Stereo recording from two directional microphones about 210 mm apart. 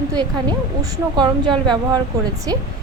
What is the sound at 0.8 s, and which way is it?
A woman's voice, 20° right (ahead or behind).